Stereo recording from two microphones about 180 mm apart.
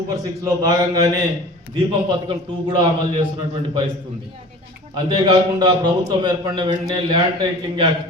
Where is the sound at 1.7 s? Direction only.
25° right (ahead or behind).